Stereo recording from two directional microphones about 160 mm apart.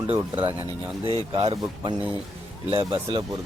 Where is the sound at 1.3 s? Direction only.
35° right (ahead or behind).